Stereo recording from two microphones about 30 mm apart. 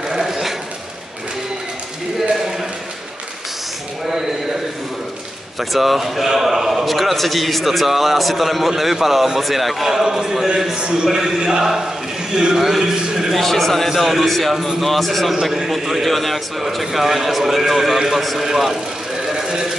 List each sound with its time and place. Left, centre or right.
0.2 s a sound: centre
5.6 s a man's voice: centre
10.1 s a man's voice: centre
10.8 s a man's voice: right; by 13.3 s centre
13.3 s a man's voice: centre
18.2 s a man's voice: centre
18.5 s a man's voice: centre
19.3 s a sound: right